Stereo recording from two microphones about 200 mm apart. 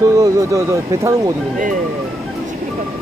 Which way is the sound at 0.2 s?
15° right (ahead or behind).